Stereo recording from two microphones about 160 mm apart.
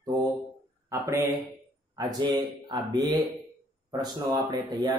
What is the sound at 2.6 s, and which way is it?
Mantra, 30° right (ahead or behind).